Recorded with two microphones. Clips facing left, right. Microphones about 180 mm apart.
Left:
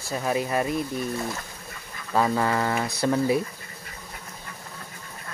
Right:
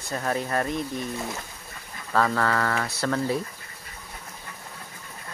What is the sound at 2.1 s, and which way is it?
Speech, 15° left (ahead or behind).